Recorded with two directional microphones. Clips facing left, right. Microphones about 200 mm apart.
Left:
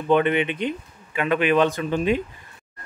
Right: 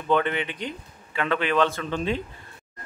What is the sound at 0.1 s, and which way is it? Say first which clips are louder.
Speech: left 5 dB; 20° left (ahead or behind).